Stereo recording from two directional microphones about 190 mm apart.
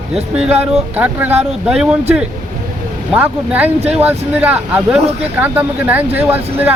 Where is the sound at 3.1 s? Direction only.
10° right (ahead or behind).